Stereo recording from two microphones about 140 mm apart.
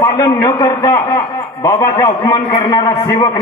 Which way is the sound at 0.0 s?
20° left (ahead or behind).